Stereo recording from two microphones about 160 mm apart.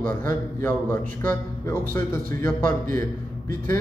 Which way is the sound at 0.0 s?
60° right (ahead or behind).